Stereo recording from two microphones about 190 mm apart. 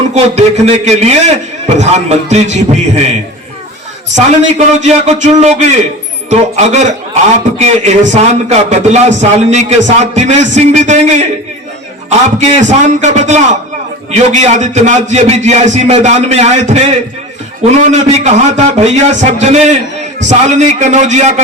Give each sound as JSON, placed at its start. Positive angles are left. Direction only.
{"t": 0.1, "sound": "a man's voice", "side_deg": -35}
{"t": 4.1, "sound": "a man's voice", "side_deg": -35}
{"t": 12.4, "sound": "a man's voice", "side_deg": -35}
{"t": 17.9, "sound": "a man's voice", "side_deg": -35}